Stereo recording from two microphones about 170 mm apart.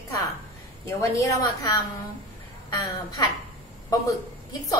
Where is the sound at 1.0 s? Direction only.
20° left (ahead or behind).